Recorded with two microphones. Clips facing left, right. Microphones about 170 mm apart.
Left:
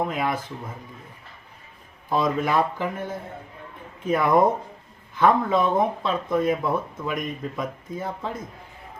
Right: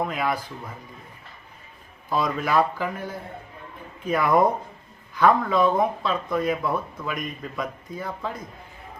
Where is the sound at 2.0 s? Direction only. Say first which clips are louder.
Left 2 dB; 25° left (ahead or behind).